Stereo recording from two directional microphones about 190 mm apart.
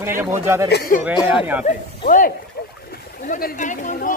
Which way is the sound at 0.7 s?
60° left (ahead or behind).